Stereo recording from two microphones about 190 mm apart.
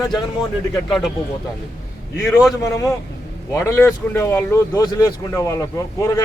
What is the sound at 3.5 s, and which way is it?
Speech, 15° left (ahead or behind).